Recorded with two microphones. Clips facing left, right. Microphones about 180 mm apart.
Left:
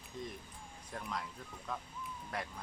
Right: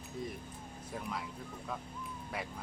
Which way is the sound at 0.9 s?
5° right (ahead or behind).